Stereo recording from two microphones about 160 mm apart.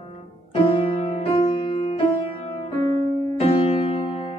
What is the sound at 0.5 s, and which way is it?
Music, 35° left (ahead or behind).